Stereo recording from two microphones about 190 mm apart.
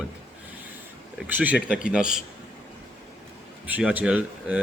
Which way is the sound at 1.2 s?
10° right (ahead or behind).